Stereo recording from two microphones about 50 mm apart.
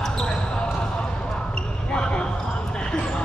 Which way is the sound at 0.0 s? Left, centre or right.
Centre.